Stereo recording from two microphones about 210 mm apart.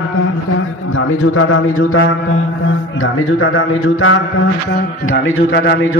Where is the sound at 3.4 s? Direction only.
75° left (ahead or behind).